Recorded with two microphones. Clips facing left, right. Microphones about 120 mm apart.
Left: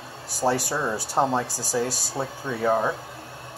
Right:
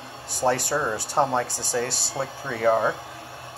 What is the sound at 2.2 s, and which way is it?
Speech, 10° left (ahead or behind).